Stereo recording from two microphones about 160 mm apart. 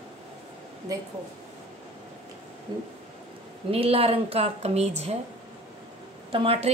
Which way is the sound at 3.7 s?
35° right (ahead or behind).